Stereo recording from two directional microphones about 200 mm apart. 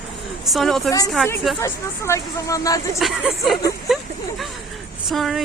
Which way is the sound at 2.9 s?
Centre (ahead or behind).